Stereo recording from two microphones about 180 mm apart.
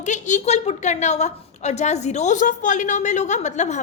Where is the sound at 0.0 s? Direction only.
40° left (ahead or behind).